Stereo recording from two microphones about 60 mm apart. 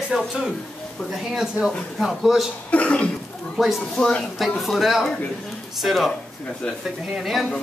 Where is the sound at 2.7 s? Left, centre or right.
Left.